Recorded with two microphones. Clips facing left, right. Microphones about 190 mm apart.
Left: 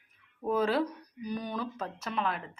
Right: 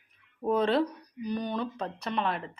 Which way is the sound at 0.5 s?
5° left (ahead or behind).